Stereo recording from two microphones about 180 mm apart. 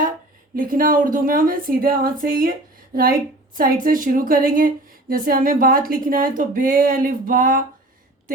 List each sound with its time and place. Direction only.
0.5 s a woman's voice: 50° right (ahead or behind)